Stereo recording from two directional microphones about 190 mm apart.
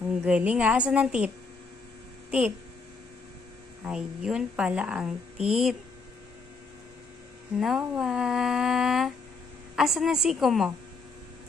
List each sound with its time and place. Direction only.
0.2 s a woman's voice: 5° right (ahead or behind)
3.8 s a woman's voice: 5° right (ahead or behind)
7.5 s a woman's voice: centre (ahead or behind)